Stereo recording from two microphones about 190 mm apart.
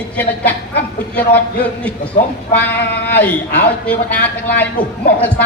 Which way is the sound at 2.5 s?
10° left (ahead or behind).